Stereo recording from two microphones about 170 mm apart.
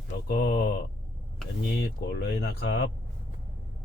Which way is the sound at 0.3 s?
70° left (ahead or behind).